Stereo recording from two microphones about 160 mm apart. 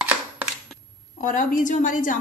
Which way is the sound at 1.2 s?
55° left (ahead or behind).